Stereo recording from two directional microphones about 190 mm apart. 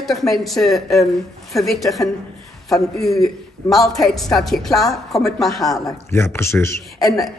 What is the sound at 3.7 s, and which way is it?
A woman's voice, centre (ahead or behind).